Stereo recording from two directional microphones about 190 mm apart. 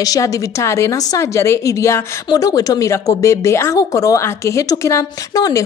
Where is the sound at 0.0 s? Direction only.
20° left (ahead or behind).